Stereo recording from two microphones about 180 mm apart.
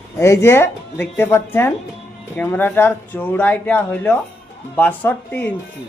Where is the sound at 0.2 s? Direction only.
15° left (ahead or behind).